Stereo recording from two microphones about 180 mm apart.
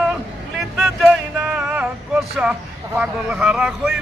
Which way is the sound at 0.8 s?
5° right (ahead or behind).